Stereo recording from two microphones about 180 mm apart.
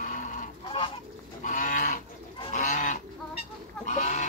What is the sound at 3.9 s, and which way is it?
Fowl, 45° left (ahead or behind).